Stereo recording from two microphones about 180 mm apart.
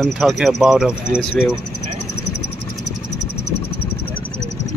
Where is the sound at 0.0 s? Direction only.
Centre (ahead or behind).